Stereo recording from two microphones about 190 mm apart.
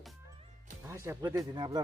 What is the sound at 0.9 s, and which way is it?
Speech, 15° right (ahead or behind).